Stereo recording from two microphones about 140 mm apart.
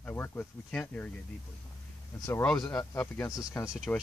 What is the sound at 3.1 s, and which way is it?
Speech, 20° left (ahead or behind).